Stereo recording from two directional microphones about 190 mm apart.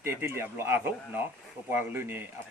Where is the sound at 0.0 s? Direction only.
10° right (ahead or behind).